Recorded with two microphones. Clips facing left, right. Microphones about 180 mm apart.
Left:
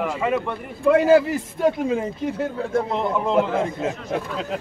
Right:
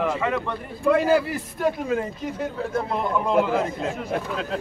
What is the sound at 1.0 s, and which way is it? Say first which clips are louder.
Speech: left 5 dB; 20° left (ahead or behind).